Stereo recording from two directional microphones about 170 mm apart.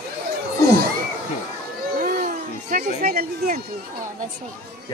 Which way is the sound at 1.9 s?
55° right (ahead or behind).